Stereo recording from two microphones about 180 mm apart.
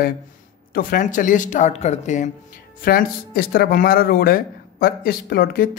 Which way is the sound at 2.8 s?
55° left (ahead or behind).